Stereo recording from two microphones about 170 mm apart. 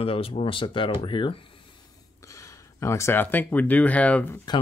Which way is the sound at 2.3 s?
15° left (ahead or behind).